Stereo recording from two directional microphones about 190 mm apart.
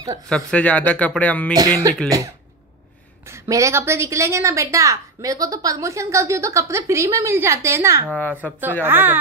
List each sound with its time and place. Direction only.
0.3 s speech: 5° left (ahead or behind)
1.5 s a woman's voice: 20° right (ahead or behind)
8.1 s speech: 5° left (ahead or behind)
8.8 s a woman's voice: 10° right (ahead or behind)